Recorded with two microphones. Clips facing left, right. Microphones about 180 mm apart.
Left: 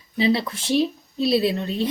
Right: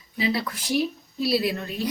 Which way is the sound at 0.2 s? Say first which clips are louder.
Left 5 dB; 25° left (ahead or behind).